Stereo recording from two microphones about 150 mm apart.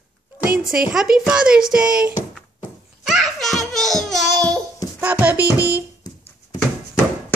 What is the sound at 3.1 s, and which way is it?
Music, centre (ahead or behind).